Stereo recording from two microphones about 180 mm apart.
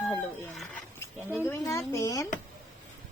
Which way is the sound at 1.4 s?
15° left (ahead or behind).